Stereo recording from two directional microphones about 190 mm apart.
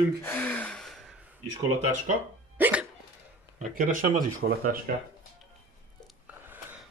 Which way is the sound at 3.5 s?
45° right (ahead or behind).